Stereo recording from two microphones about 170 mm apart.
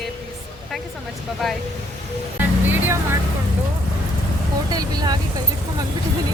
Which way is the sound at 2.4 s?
10° right (ahead or behind).